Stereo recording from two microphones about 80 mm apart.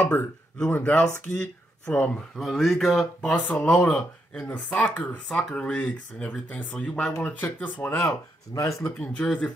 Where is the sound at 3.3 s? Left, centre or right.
Centre.